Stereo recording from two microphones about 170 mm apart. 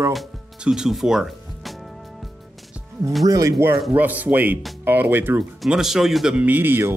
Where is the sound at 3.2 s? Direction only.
20° right (ahead or behind).